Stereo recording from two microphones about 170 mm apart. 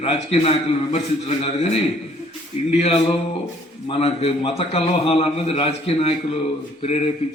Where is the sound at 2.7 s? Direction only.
35° left (ahead or behind).